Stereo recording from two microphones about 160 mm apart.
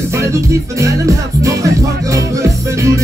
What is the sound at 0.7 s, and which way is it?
Music, 20° right (ahead or behind).